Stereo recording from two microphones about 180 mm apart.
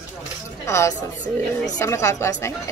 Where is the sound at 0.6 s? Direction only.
15° left (ahead or behind).